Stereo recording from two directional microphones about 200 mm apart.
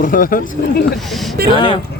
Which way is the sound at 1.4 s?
50° right (ahead or behind).